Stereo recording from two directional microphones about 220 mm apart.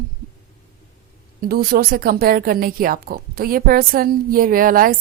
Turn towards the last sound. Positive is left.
turn(degrees=-40)  # may be behind; listen again after turning